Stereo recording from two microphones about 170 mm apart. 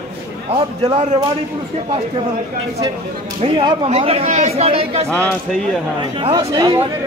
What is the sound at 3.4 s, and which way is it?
Speech, 30° right (ahead or behind).